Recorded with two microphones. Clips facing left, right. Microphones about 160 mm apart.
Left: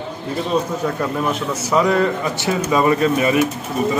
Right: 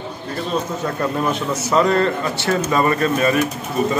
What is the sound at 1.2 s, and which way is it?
Speech, 10° left (ahead or behind).